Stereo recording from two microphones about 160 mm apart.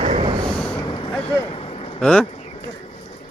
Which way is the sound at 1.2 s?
30° left (ahead or behind).